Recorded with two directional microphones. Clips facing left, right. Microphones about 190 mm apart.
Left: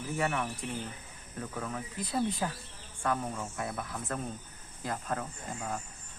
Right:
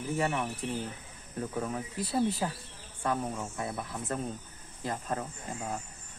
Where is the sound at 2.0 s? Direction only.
5° right (ahead or behind).